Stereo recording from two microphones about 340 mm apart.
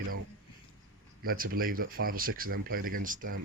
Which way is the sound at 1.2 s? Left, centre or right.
Right.